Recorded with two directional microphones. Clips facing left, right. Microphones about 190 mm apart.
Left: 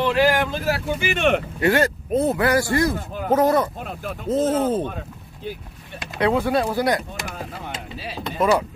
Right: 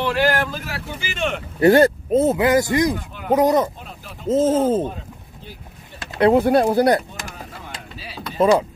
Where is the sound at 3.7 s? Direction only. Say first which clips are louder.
Left 8 dB; 55° left (ahead or behind).